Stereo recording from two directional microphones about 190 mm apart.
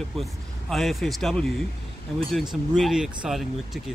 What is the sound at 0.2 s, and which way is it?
Speech, centre (ahead or behind).